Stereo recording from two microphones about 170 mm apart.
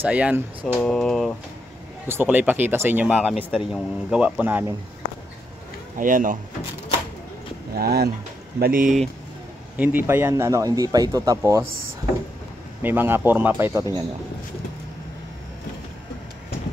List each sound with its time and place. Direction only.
0.0 s speech: 10° right (ahead or behind)
0.7 s speech: 5° left (ahead or behind)
2.0 s speech: 10° right (ahead or behind)
5.9 s speech: 50° right (ahead or behind)
7.7 s speech: 65° right (ahead or behind)
9.8 s speech: 10° right (ahead or behind)
12.8 s speech: 10° right (ahead or behind)